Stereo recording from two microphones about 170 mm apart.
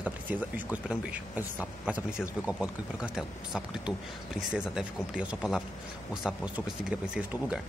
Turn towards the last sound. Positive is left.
turn(degrees=-5)  # may be behind; listen again after turning